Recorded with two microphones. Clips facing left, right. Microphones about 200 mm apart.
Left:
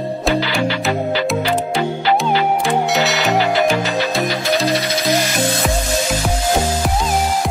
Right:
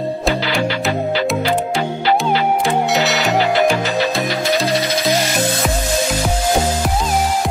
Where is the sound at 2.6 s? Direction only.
Centre (ahead or behind).